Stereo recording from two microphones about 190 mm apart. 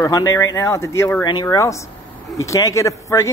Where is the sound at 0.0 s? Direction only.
20° left (ahead or behind).